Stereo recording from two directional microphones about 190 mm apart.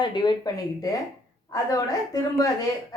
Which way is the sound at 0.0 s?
25° left (ahead or behind).